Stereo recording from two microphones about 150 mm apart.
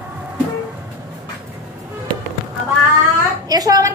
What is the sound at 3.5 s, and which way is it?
Speech, 25° right (ahead or behind).